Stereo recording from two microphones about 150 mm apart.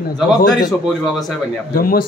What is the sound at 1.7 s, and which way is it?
Speech, 80° left.